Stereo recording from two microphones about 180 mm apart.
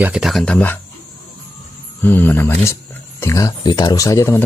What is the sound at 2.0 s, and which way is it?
Speech, 10° left (ahead or behind).